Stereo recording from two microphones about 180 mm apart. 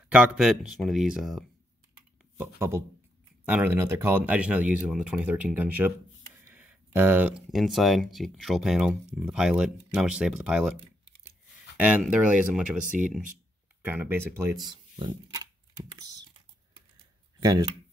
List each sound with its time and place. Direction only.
0.1 s speech: 5° right (ahead or behind)
2.3 s speech: 15° right (ahead or behind)
11.7 s a sound: 10° right (ahead or behind)
12.0 s speech: 5° right (ahead or behind)
13.8 s speech: 10° right (ahead or behind)
17.4 s speech: 20° right (ahead or behind)